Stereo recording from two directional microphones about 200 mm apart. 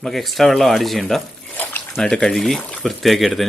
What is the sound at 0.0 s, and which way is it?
Speech, centre (ahead or behind).